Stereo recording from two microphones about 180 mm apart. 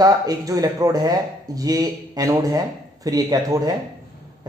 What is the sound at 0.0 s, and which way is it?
A man's voice, 20° right (ahead or behind).